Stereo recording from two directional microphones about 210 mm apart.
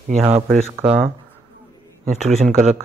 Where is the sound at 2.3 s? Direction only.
35° right (ahead or behind).